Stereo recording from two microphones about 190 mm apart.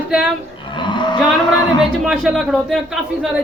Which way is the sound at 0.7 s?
25° left (ahead or behind).